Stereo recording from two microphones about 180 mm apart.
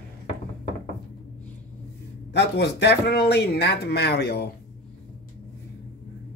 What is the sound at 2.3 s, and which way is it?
Speech, 70° left (ahead or behind).